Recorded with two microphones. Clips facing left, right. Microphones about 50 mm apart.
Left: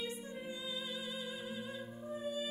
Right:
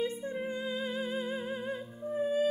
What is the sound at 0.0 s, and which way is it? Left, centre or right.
Music, right.